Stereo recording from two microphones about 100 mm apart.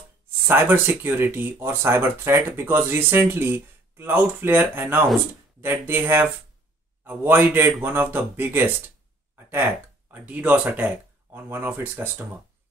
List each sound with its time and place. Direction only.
0.5 s speech: 20° right (ahead or behind)
10.1 s speech: 15° right (ahead or behind)